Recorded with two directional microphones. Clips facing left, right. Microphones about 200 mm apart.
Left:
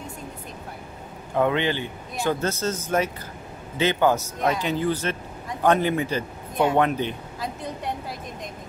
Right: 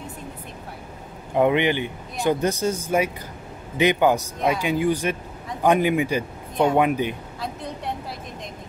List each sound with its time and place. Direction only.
1.3 s a woman's voice: 15° right (ahead or behind); by 7.9 s centre (ahead or behind)